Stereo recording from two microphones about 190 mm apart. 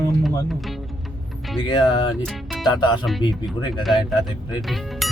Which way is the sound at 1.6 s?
25° left (ahead or behind).